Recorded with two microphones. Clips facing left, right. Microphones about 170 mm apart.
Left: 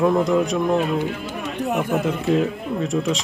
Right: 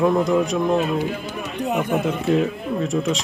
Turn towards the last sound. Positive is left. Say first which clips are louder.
# even
turn(degrees=0)  # may be behind; listen again after turning